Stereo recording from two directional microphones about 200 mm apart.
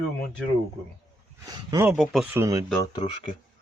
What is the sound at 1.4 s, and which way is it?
Speech, 15° right (ahead or behind).